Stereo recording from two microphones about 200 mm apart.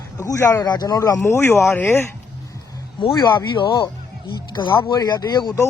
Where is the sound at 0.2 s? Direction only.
15° left (ahead or behind).